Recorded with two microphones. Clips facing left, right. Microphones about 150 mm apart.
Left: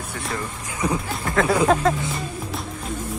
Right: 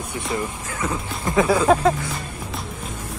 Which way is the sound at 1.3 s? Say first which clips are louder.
Right 2 dB; 10° right (ahead or behind).